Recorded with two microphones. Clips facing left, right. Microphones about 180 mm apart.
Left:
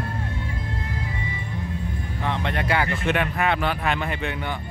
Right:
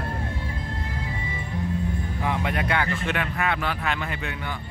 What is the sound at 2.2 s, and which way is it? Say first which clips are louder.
Music: left 1 dB; 10° right (ahead or behind).